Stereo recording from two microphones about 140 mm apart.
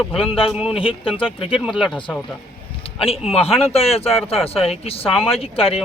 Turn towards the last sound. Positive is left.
turn(degrees=45)  # may be behind; listen again after turning